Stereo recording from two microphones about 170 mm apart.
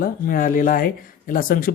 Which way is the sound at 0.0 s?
55° left (ahead or behind).